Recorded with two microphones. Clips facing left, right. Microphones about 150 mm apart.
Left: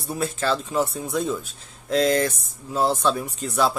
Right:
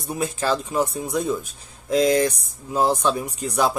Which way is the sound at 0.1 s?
15° right (ahead or behind).